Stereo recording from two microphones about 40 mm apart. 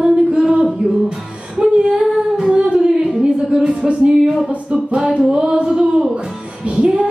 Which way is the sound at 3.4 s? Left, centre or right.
Right.